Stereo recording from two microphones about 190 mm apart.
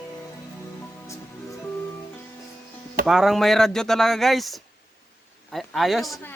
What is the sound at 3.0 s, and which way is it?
Speech, centre (ahead or behind).